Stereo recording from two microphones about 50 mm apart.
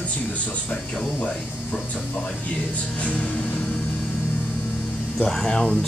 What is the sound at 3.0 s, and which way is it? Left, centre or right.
Speech, left.